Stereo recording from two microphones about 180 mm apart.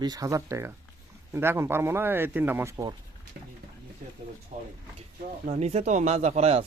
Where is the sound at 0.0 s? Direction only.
20° right (ahead or behind).